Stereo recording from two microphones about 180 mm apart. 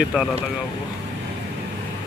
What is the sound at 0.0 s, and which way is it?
Speech, 5° right (ahead or behind).